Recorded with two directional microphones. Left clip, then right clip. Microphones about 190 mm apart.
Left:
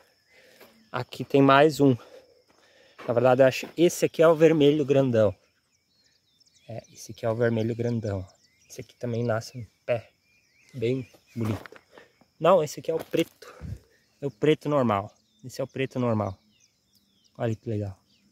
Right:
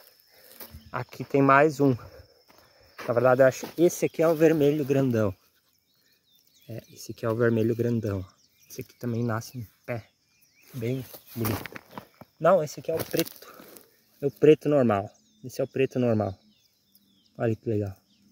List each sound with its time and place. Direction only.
0.8 s speech: 25° left (ahead or behind)
6.9 s speech: 15° left (ahead or behind)
11.1 s speech: 55° right (ahead or behind)
12.4 s speech: 20° left (ahead or behind)
13.1 s a sound: 25° left (ahead or behind)
14.2 s speech: 15° left (ahead or behind)
17.4 s speech: 20° left (ahead or behind)